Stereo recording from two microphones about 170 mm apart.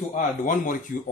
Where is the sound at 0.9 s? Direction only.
55° left (ahead or behind).